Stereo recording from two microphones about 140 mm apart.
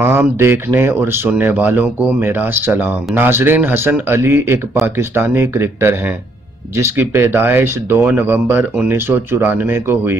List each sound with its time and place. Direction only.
0.0 s speech: 15° right (ahead or behind)